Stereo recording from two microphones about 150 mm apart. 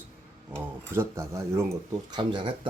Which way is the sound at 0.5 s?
15° right (ahead or behind).